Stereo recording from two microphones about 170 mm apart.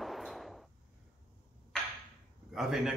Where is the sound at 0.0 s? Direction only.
Centre (ahead or behind).